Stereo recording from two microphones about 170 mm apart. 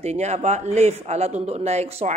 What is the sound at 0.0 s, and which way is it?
Speech, 40° right (ahead or behind).